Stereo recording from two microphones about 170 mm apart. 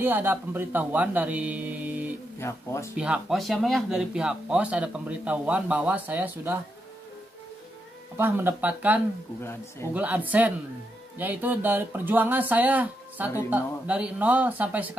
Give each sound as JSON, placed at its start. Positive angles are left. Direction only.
{"t": 0.0, "sound": "speech", "side_deg": -10}
{"t": 2.3, "sound": "speech", "side_deg": 15}
{"t": 3.0, "sound": "speech", "side_deg": -5}
{"t": 8.2, "sound": "speech", "side_deg": -10}
{"t": 9.4, "sound": "speech", "side_deg": 15}
{"t": 9.9, "sound": "speech", "side_deg": -10}